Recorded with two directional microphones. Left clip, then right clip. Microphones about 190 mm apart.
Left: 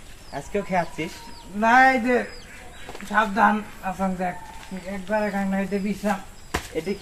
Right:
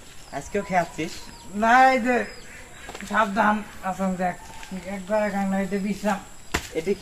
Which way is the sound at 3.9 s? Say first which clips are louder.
Even; centre (ahead or behind).